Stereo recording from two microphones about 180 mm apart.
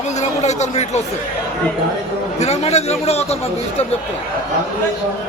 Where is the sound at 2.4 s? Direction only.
35° left (ahead or behind).